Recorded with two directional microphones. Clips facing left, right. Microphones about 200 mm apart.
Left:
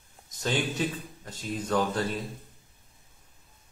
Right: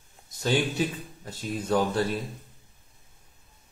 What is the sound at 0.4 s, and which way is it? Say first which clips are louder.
Speech: right 3 dB; 10° right (ahead or behind).